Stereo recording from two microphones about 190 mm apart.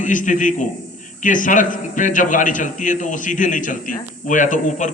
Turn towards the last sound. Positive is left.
turn(degrees=40)  # may be behind; listen again after turning